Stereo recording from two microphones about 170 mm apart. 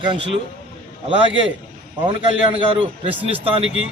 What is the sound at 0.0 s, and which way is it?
Speech, 30° right (ahead or behind).